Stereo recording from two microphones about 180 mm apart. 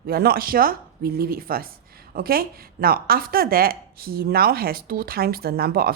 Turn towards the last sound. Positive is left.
turn(degrees=-55)  # may be behind; listen again after turning